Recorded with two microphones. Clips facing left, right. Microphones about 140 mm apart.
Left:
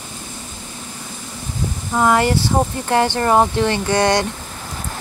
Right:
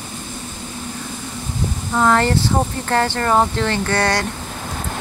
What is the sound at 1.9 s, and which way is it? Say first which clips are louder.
Speech: left 1 dB; 10° left (ahead or behind).